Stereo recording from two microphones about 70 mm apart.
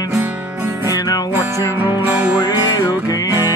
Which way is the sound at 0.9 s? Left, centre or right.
Left.